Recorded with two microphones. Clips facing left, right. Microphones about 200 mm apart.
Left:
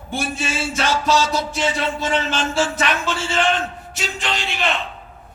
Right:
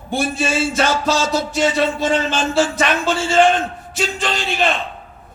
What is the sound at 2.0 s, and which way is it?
Speech, 40° right (ahead or behind).